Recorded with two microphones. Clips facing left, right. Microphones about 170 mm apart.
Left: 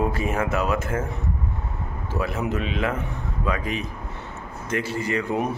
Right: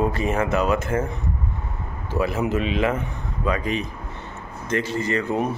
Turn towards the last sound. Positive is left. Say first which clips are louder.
# right 1 dB
turn(degrees=10)  # may be behind; listen again after turning